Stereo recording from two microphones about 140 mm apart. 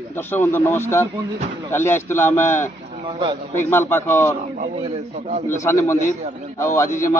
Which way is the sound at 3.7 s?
15° left (ahead or behind).